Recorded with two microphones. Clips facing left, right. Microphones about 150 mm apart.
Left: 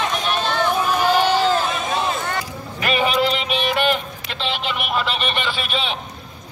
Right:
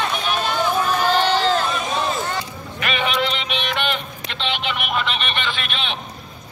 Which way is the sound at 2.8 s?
40° left (ahead or behind).